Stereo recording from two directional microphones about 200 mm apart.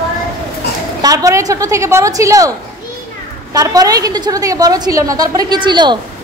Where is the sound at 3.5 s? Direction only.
20° right (ahead or behind).